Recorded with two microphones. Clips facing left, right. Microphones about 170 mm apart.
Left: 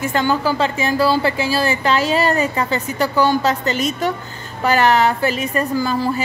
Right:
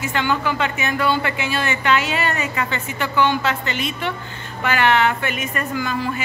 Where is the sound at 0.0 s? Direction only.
40° left (ahead or behind).